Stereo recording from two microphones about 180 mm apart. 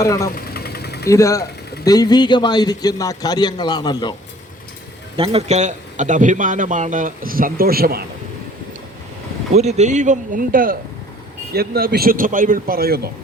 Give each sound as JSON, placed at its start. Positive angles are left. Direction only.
{"t": 0.0, "sound": "speech", "side_deg": 20}
{"t": 0.5, "sound": "engine", "side_deg": 60}
{"t": 1.0, "sound": "speech", "side_deg": 15}
{"t": 5.1, "sound": "a man's voice", "side_deg": -35}
{"t": 9.6, "sound": "a man's voice", "side_deg": -40}